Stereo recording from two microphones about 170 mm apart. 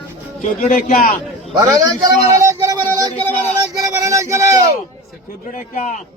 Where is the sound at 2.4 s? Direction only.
20° right (ahead or behind).